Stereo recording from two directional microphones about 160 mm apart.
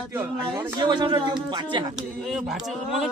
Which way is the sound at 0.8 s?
30° right (ahead or behind).